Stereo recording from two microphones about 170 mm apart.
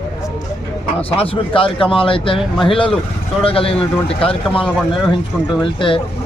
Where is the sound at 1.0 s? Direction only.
35° left (ahead or behind).